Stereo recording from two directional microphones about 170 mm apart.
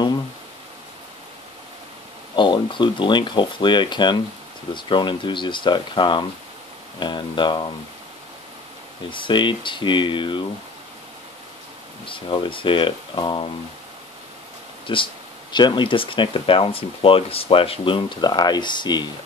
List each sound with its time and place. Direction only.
2.3 s speech: 25° left (ahead or behind)
9.1 s speech: 30° left (ahead or behind)
12.1 s speech: 30° left (ahead or behind)
14.9 s speech: 30° left (ahead or behind)